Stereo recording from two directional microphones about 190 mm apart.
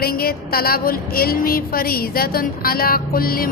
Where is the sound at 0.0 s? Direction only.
55° left (ahead or behind).